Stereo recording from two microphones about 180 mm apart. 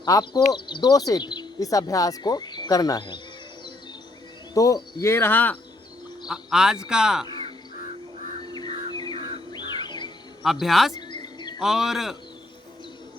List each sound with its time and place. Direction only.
0.0 s speech: 25° left (ahead or behind)
4.5 s speech: 20° left (ahead or behind)
6.2 s speech: 5° right (ahead or behind)
8.4 s crow: 25° left (ahead or behind)
8.9 s bird: 25° left (ahead or behind)
9.1 s bird: 30° right (ahead or behind)
9.5 s music: 25° left (ahead or behind)
10.4 s speech: centre (ahead or behind)
10.9 s a sound: 25° left (ahead or behind)
11.6 s speech: centre (ahead or behind)